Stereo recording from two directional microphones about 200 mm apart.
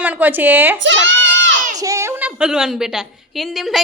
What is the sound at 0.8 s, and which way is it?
Crowd, 65° right (ahead or behind).